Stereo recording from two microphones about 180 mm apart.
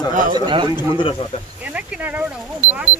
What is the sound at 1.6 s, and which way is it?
Speech, 10° right (ahead or behind).